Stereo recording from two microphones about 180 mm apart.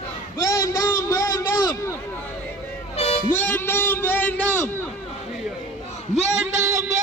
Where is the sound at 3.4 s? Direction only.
10° left (ahead or behind).